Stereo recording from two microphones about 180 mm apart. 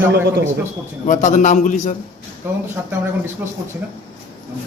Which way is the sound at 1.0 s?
45° left (ahead or behind).